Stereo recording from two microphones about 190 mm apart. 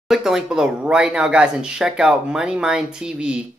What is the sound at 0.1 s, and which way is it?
Speech, centre (ahead or behind).